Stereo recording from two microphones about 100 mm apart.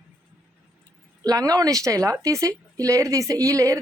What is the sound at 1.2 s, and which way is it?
Speech, 40° right (ahead or behind).